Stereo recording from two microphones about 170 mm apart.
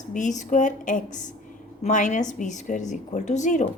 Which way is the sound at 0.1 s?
45° left (ahead or behind).